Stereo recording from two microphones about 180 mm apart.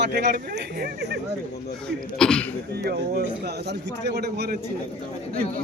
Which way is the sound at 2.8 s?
60° right (ahead or behind).